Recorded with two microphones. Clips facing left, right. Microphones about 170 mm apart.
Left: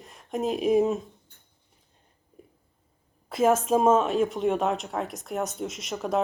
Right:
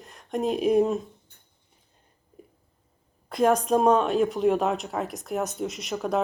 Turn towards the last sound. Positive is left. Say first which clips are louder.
# right 1 dB
turn(degrees=0)  # may be behind; listen again after turning